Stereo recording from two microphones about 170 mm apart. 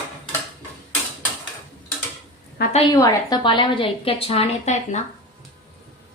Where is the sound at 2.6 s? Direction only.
65° left (ahead or behind).